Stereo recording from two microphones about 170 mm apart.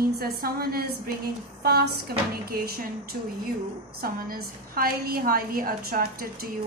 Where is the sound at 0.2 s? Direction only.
65° right (ahead or behind).